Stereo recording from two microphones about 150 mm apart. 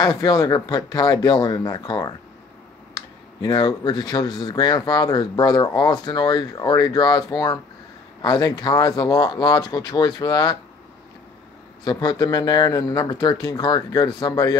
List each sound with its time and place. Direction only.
0.0 s speech: 25° left (ahead or behind)
3.4 s speech: 30° left (ahead or behind)
11.8 s speech: 30° left (ahead or behind)